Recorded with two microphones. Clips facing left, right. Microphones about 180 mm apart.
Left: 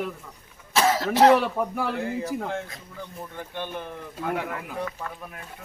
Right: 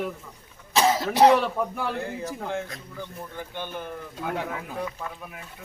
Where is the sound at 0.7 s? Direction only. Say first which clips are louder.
Even; 15° right (ahead or behind).